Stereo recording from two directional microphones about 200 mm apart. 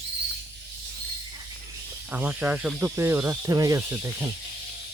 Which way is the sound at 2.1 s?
10° right (ahead or behind).